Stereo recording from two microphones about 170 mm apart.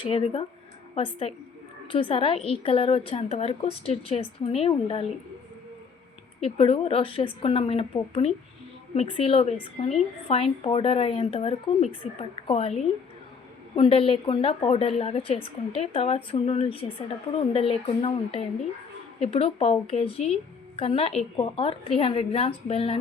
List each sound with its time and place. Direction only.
0.0 s a woman's voice: 35° left (ahead or behind)
6.4 s a woman's voice: 35° left (ahead or behind)
9.0 s a woman's voice: 35° left (ahead or behind)
13.7 s a woman's voice: 35° left (ahead or behind)